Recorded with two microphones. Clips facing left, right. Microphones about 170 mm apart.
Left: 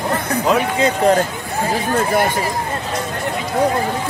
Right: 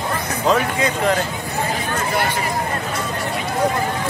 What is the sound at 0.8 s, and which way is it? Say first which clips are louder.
Speech: left 5 dB; 35° left (ahead or behind).